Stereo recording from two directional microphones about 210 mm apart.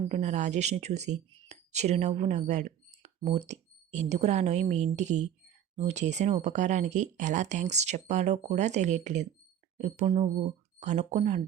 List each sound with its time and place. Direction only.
0.1 s speech: 35° right (ahead or behind)